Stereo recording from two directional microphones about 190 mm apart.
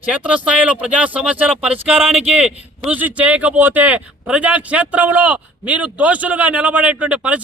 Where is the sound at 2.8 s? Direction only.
10° right (ahead or behind).